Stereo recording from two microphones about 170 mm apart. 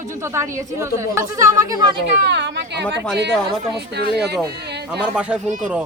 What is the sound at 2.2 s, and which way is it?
Speech, 90° right.